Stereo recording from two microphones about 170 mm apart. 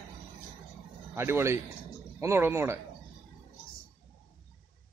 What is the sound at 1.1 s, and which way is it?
Speech, 15° right (ahead or behind).